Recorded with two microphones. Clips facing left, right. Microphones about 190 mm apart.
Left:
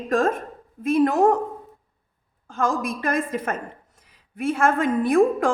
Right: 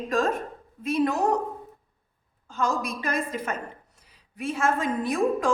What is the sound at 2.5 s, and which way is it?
A woman's voice, 50° left (ahead or behind).